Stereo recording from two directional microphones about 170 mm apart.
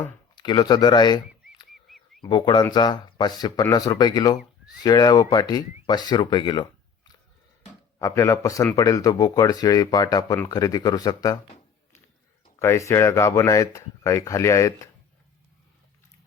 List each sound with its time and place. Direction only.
0.0 s speech: 25° left (ahead or behind)
2.2 s speech: 25° left (ahead or behind)
12.5 s speech: 15° left (ahead or behind)